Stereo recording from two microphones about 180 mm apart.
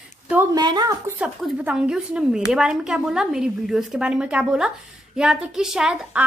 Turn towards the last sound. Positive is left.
turn(degrees=-5)  # may be behind; listen again after turning